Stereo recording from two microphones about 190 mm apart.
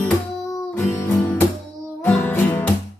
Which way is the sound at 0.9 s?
10° left (ahead or behind).